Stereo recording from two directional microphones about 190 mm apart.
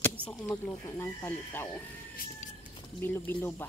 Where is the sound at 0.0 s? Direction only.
10° left (ahead or behind).